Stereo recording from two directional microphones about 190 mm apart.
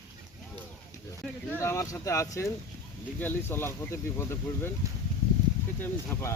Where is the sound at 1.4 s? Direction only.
15° left (ahead or behind).